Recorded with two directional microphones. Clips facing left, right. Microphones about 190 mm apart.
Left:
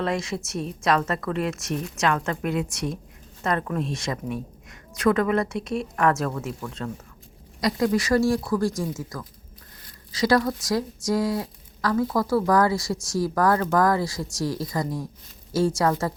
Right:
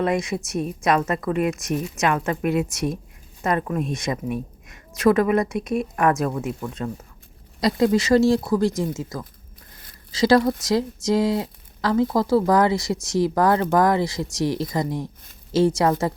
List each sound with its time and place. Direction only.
0.0 s speech: 20° right (ahead or behind)